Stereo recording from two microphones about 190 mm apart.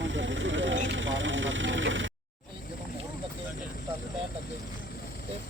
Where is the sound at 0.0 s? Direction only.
75° right (ahead or behind).